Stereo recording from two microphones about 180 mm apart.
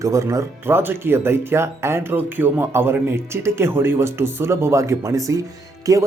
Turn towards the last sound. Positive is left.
turn(degrees=-20)  # may be behind; listen again after turning